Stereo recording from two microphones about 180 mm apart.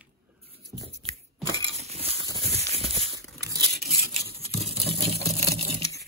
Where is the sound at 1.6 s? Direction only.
35° right (ahead or behind).